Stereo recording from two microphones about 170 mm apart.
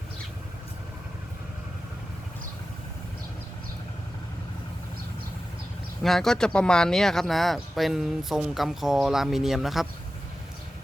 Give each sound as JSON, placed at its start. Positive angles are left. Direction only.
{"t": 6.0, "sound": "speech", "side_deg": 0}